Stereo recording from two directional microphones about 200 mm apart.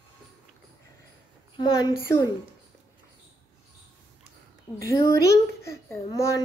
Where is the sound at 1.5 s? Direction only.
20° left (ahead or behind).